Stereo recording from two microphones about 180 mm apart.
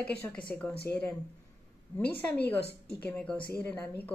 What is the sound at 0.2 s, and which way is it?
Speech, 5° left (ahead or behind).